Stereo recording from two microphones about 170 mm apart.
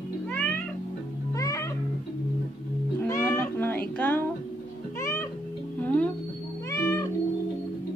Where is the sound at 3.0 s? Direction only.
15° left (ahead or behind).